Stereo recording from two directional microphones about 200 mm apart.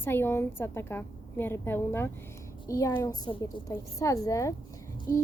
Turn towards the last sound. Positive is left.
turn(degrees=15)  # may be behind; listen again after turning